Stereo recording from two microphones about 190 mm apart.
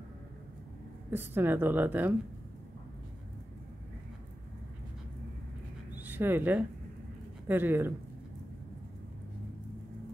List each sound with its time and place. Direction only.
1.1 s a woman's voice: 10° right (ahead or behind)
6.0 s a woman's voice: 10° right (ahead or behind)